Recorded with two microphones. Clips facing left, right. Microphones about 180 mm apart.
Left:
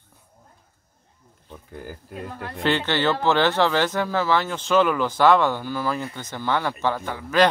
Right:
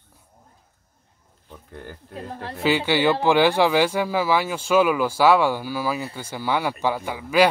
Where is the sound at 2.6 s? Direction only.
10° right (ahead or behind).